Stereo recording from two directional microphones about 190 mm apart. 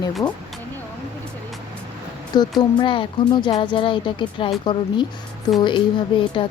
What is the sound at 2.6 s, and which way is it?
A woman's voice, 25° left (ahead or behind).